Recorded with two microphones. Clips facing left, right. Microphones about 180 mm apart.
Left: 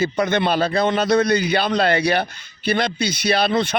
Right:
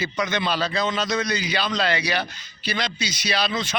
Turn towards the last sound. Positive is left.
turn(degrees=55)  # may be behind; listen again after turning